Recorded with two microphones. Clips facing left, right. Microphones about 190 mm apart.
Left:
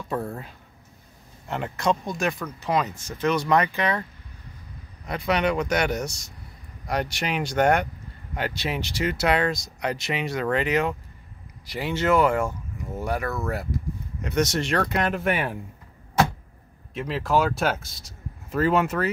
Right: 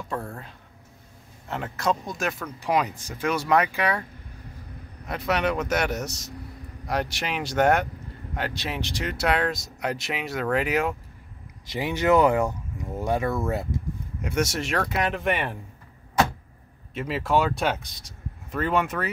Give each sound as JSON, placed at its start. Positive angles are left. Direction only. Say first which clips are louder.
{"t": 0.1, "sound": "speech", "louder": "left 4 dB", "side_deg": 5}
{"t": 1.5, "sound": "speech", "louder": "left 2 dB", "side_deg": 0}
{"t": 2.6, "sound": "speech", "louder": "right 1 dB", "side_deg": -10}
{"t": 5.0, "sound": "speech", "louder": "left 1 dB", "side_deg": 0}
{"t": 11.6, "sound": "speech", "louder": "right 1 dB", "side_deg": -20}
{"t": 14.2, "sound": "speech", "louder": "left 2 dB", "side_deg": -5}
{"t": 16.9, "sound": "speech", "louder": "even", "side_deg": 0}